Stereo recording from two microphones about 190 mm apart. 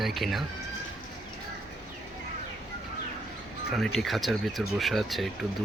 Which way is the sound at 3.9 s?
Centre (ahead or behind).